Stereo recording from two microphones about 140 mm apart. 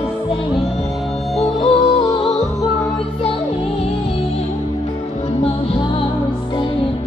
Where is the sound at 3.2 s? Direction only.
40° left (ahead or behind).